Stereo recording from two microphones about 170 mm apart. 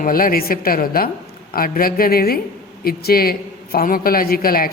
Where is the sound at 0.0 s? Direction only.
55° left (ahead or behind).